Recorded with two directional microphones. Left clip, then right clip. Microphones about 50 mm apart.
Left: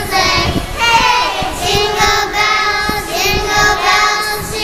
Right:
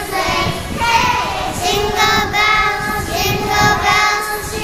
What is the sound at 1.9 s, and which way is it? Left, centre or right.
Child singing, right.